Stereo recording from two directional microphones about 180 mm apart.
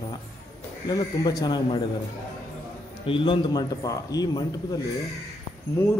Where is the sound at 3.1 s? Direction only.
25° left (ahead or behind).